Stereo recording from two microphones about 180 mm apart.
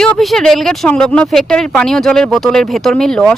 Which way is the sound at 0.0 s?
Centre (ahead or behind).